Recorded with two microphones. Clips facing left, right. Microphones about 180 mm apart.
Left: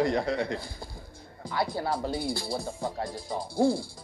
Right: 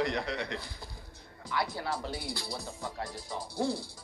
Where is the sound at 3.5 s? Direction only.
50° left (ahead or behind).